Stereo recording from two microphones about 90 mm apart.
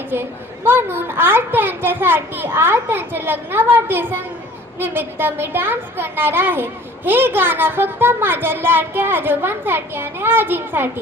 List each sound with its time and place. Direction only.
0.1 s a woman's voice: 25° right (ahead or behind)